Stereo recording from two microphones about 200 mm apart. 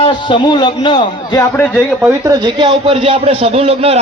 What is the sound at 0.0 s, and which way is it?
A man's voice, 25° left (ahead or behind).